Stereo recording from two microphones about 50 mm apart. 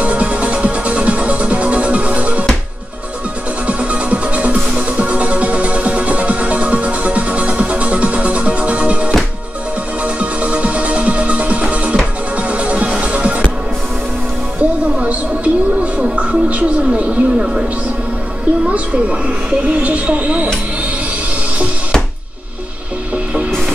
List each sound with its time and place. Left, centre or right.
0.0 s music: right
3.6 s music: right
14.6 s music: right
18.7 s a sound: right